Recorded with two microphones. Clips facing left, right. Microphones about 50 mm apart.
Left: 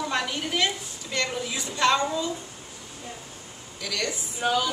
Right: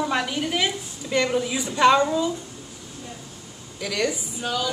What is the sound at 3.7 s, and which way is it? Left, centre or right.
Speech, centre.